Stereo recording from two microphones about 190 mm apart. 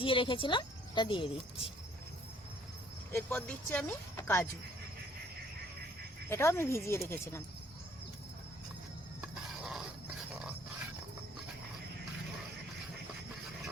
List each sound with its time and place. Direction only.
0.0 s a woman's voice: 25° left (ahead or behind)
3.1 s speech: 10° left (ahead or behind)
6.2 s speech: 15° left (ahead or behind)
9.2 s a sound: centre (ahead or behind)